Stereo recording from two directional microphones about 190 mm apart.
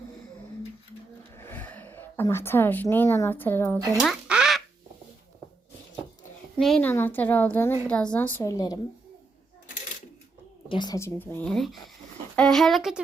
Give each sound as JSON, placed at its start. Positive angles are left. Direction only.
{"t": 1.4, "sound": "speech", "side_deg": 10}
{"t": 3.8, "sound": "speech", "side_deg": -20}
{"t": 4.0, "sound": "quack", "side_deg": 0}
{"t": 6.6, "sound": "a woman's voice", "side_deg": 5}
{"t": 10.7, "sound": "a woman's voice", "side_deg": 20}